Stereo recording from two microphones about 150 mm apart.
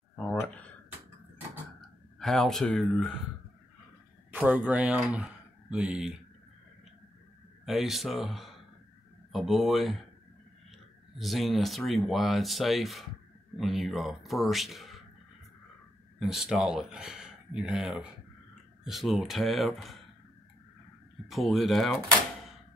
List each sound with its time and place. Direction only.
0.1 s a sound: 10° left (ahead or behind)
2.1 s speech: 5° left (ahead or behind)
4.3 s speech: 10° right (ahead or behind)
7.6 s speech: centre (ahead or behind)
16.2 s speech: 5° right (ahead or behind)
21.3 s speech: centre (ahead or behind)